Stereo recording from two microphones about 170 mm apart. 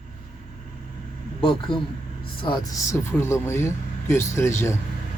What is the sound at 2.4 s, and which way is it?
Speech, 25° left (ahead or behind).